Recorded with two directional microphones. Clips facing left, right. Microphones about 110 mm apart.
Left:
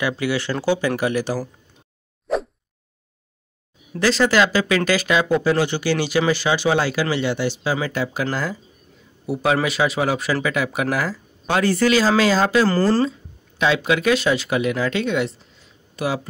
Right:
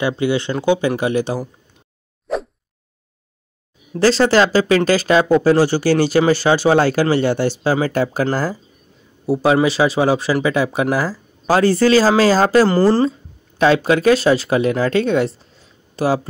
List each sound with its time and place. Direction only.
0.2 s speech: 25° right (ahead or behind)
2.3 s plop: centre (ahead or behind)
3.9 s speech: 35° right (ahead or behind)
12.6 s speech: 25° right (ahead or behind)
13.6 s speech: 40° right (ahead or behind)